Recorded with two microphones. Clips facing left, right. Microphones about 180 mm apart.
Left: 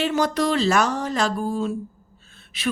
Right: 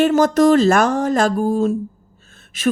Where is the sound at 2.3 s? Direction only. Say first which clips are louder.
Right 2 dB; 45° right (ahead or behind).